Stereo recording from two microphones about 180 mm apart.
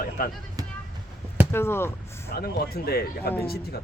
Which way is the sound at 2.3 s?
60° left (ahead or behind).